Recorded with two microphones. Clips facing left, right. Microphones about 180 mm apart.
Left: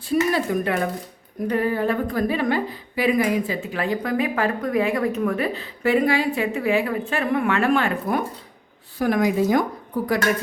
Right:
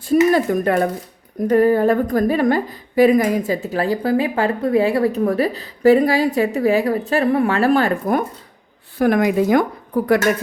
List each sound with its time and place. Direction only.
0.1 s a woman's voice: 45° right (ahead or behind)
9.0 s speech: 60° right (ahead or behind)